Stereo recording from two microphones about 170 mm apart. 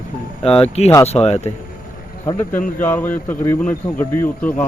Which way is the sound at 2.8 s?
10° left (ahead or behind).